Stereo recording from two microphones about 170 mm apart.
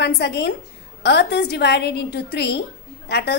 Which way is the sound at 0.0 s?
80° left.